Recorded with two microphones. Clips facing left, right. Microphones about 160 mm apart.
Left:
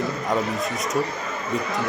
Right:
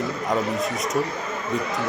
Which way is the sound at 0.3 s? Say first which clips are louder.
Right 2 dB; centre (ahead or behind).